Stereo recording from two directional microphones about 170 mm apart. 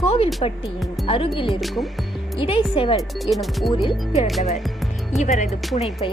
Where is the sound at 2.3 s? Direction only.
30° left (ahead or behind).